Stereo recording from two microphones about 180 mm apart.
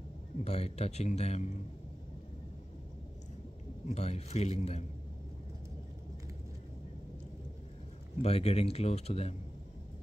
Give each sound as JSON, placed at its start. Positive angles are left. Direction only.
{"t": 0.4, "sound": "speech", "side_deg": 35}
{"t": 3.8, "sound": "speech", "side_deg": 35}
{"t": 8.2, "sound": "speech", "side_deg": 35}